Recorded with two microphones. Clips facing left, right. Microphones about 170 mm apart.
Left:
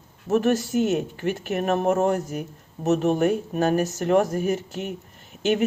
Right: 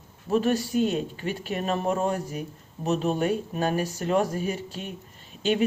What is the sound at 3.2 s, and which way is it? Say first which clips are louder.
Speech: left 4 dB; 55° left (ahead or behind).